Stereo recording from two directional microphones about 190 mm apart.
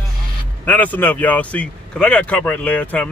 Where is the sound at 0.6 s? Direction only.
10° left (ahead or behind).